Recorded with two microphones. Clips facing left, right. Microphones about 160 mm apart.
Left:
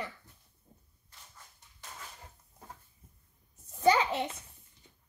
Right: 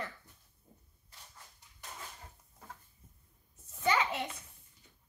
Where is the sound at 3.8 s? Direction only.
35° left (ahead or behind).